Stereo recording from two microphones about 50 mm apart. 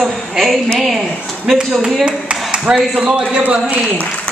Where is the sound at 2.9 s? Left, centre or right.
Centre.